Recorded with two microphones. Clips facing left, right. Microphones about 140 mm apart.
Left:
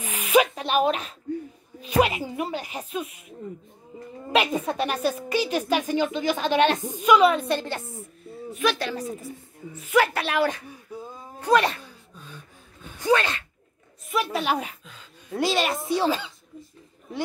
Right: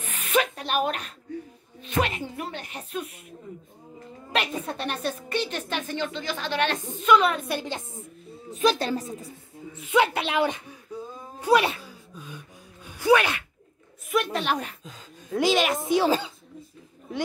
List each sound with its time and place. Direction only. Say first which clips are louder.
0.1 s a sound: left 5 dB; 10° left (ahead or behind)
1.8 s a woman's voice: left 5 dB; 10° left (ahead or behind)
4.3 s a woman's voice: left 5 dB; centre (ahead or behind)
7.5 s a woman's voice: left 2 dB; 15° right (ahead or behind)
8.5 s speech: right 3 dB; 30° right (ahead or behind)
10.9 s a sound: right 2 dB; 10° left (ahead or behind)
11.4 s a sound: even; 10° right (ahead or behind)
14.0 s a woman's voice: even; 5° left (ahead or behind)
14.8 s speech: right 3 dB; 40° right (ahead or behind)
15.3 s a woman's voice: right 2 dB; centre (ahead or behind)
16.1 s speech: right 2 dB; 40° right (ahead or behind)